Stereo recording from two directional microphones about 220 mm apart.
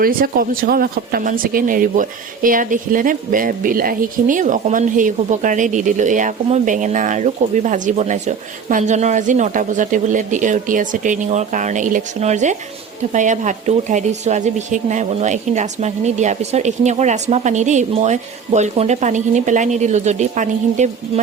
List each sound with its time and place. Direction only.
0.0 s speech: 40° right (ahead or behind)